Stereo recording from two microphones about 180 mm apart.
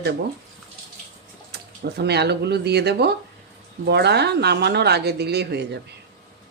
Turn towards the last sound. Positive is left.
turn(degrees=-65)  # may be behind; listen again after turning